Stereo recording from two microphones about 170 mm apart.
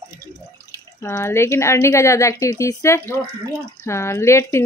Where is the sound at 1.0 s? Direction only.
15° left (ahead or behind).